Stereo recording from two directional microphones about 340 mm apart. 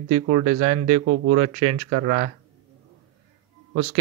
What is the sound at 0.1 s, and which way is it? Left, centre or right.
A man's voice, right.